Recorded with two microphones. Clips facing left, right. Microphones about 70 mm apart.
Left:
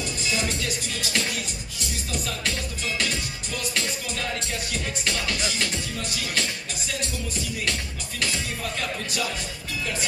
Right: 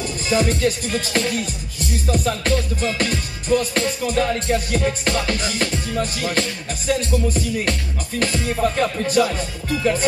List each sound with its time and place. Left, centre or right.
0.3 s speech: right